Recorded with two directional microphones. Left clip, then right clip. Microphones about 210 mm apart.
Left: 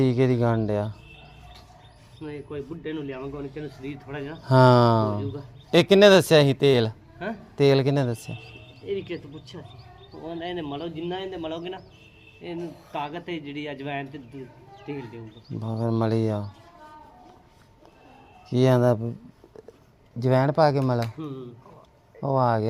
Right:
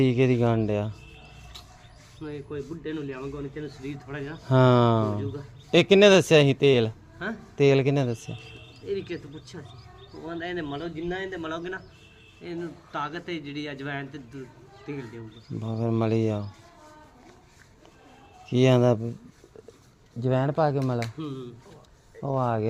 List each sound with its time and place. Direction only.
0.0 s speech: 5° right (ahead or behind)
2.2 s speech: 5° right (ahead or behind)
18.4 s speech: 5° right (ahead or behind)
20.1 s speech: 10° left (ahead or behind)
21.2 s speech: 30° right (ahead or behind)
22.2 s speech: 10° left (ahead or behind)